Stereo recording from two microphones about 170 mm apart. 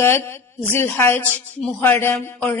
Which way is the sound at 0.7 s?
10° left (ahead or behind).